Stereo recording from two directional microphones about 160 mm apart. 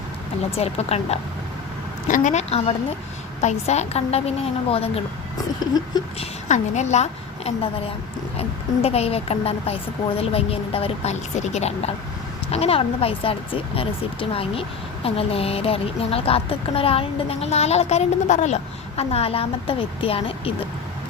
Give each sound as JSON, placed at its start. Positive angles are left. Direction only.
{"t": 0.5, "sound": "speech", "side_deg": 40}
{"t": 2.0, "sound": "a woman's voice", "side_deg": 50}
{"t": 6.1, "sound": "a woman's voice", "side_deg": 45}